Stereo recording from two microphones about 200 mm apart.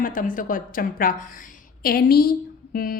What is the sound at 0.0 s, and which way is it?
A man's voice, 45° left (ahead or behind).